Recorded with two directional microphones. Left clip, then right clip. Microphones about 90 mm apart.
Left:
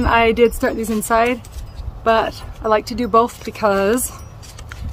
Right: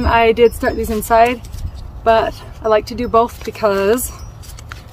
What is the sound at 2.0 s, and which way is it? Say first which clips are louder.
Speech: right 3 dB; 40° left (ahead or behind).